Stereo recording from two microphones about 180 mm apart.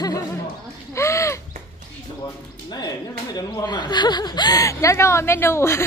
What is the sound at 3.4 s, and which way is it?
Speech, 25° left (ahead or behind).